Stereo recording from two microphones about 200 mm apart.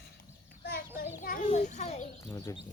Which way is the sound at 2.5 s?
15° left (ahead or behind).